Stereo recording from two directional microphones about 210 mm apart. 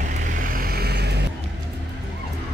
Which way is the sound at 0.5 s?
45° right (ahead or behind).